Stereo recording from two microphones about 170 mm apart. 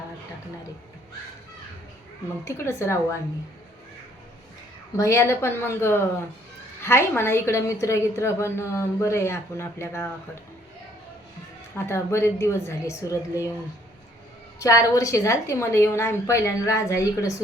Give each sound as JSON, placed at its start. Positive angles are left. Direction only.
{"t": 2.4, "sound": "a woman's voice", "side_deg": 15}
{"t": 4.9, "sound": "a woman's voice", "side_deg": 15}
{"t": 11.9, "sound": "a woman's voice", "side_deg": 15}
{"t": 14.6, "sound": "a woman's voice", "side_deg": 20}